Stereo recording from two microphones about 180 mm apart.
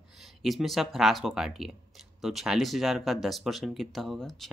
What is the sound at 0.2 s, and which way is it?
Speech, centre (ahead or behind).